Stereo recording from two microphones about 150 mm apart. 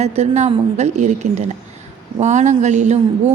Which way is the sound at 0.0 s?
45° right (ahead or behind).